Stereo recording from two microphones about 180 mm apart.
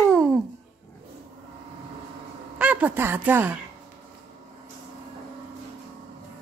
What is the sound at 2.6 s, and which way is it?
A woman's voice, 10° right (ahead or behind).